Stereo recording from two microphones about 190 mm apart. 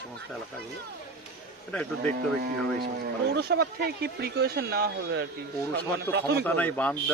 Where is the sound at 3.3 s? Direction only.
55° right (ahead or behind).